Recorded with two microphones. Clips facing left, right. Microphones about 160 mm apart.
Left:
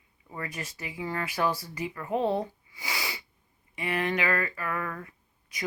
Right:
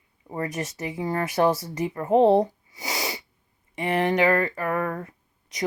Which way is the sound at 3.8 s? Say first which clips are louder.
Right 7 dB; 40° right (ahead or behind).